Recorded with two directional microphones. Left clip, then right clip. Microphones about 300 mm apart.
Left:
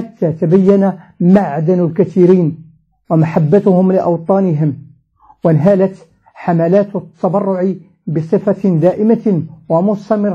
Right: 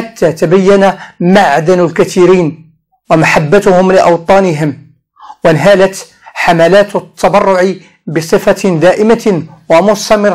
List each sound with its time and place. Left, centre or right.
0.0 s speech: centre
4.5 s speech: centre